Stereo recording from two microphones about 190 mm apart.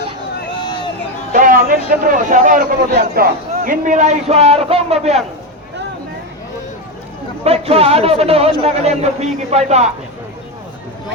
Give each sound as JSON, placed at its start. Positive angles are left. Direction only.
{"t": 1.3, "sound": "a man's voice", "side_deg": -45}
{"t": 7.4, "sound": "a man's voice", "side_deg": -30}